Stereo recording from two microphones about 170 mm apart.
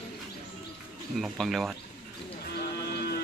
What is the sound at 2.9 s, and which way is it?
Boat, 65° left (ahead or behind).